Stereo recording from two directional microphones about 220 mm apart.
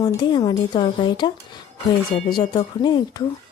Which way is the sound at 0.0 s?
20° left (ahead or behind).